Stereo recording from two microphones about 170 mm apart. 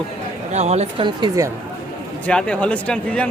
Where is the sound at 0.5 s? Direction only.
40° right (ahead or behind).